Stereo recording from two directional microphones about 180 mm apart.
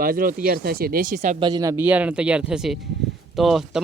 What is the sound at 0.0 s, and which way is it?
Speech, 50° right (ahead or behind).